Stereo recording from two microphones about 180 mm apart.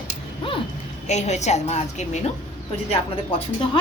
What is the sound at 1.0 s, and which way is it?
A woman's voice, 40° left (ahead or behind).